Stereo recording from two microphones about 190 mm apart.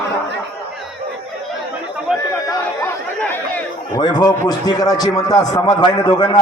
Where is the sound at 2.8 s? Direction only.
10° left (ahead or behind).